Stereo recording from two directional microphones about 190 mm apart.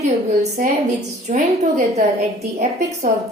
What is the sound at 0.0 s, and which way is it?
A woman's voice, 35° right (ahead or behind).